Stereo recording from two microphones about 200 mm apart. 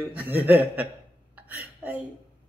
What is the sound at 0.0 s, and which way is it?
Speech, 5° right (ahead or behind).